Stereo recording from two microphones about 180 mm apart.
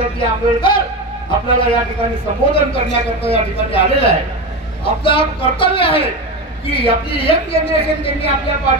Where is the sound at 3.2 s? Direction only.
30° left (ahead or behind).